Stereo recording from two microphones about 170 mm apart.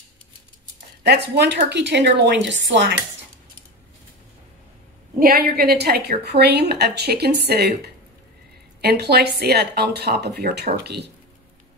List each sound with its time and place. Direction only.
1.0 s a woman's voice: 80° right
5.2 s a woman's voice: 65° right (ahead or behind)